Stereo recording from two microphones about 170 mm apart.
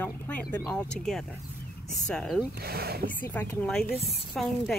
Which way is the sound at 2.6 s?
65° right (ahead or behind).